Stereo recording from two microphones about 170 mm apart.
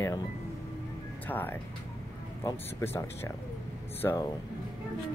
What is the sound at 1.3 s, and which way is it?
Speech, 10° left (ahead or behind).